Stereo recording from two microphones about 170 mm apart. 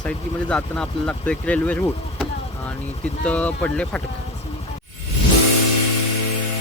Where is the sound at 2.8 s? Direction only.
40° left (ahead or behind).